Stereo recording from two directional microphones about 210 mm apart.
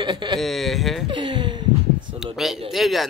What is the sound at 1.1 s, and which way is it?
Speech, 20° right (ahead or behind).